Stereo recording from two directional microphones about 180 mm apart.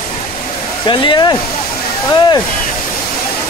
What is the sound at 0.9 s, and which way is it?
Speech, 25° left (ahead or behind).